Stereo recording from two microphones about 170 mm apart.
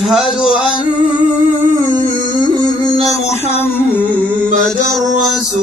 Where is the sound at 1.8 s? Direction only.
25° left (ahead or behind).